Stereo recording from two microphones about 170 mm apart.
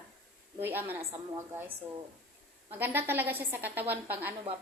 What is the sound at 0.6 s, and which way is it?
Speech, 10° right (ahead or behind).